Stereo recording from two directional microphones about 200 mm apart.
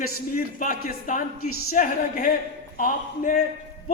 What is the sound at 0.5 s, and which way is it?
A man's voice, 40° left (ahead or behind).